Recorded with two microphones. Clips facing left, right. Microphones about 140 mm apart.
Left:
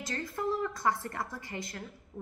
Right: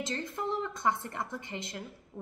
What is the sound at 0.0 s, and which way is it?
A woman's voice, 25° right (ahead or behind).